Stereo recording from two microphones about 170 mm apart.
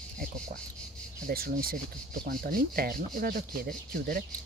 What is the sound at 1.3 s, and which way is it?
Speech, 60° right (ahead or behind).